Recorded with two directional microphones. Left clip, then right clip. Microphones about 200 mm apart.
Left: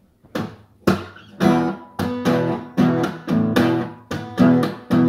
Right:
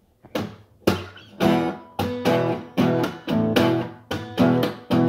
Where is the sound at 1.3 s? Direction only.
15° right (ahead or behind).